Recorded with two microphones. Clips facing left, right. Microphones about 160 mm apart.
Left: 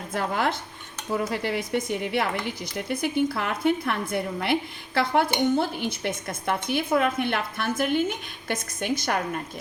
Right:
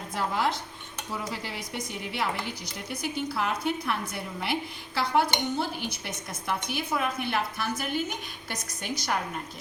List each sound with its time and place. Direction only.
0.1 s a woman's voice: 60° left (ahead or behind)